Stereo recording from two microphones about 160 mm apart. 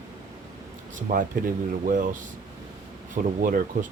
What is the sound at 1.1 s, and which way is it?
Speech, 60° right (ahead or behind).